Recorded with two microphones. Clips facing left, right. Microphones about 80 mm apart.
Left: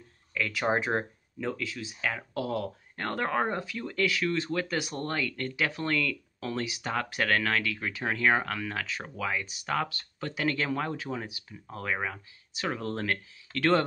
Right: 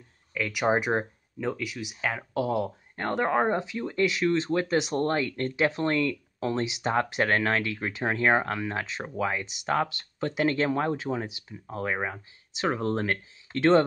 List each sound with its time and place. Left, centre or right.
0.3 s speech: centre